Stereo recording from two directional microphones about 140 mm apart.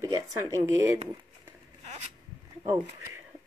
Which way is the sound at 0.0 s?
20° right (ahead or behind).